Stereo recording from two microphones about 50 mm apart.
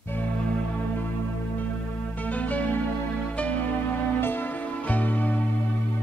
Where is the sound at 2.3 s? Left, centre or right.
Left.